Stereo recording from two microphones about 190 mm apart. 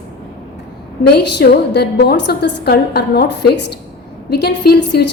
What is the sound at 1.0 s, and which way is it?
A woman's voice, 60° left (ahead or behind).